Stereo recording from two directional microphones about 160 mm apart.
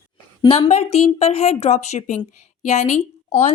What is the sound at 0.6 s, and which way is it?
Speech, 45° left (ahead or behind).